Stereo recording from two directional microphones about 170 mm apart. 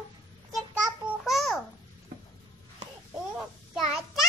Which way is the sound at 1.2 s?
Centre (ahead or behind).